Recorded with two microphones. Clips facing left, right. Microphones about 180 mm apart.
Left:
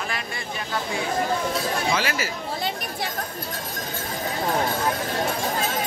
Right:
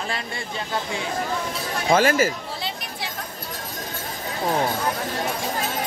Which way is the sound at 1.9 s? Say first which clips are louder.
Right 8 dB; 50° right (ahead or behind).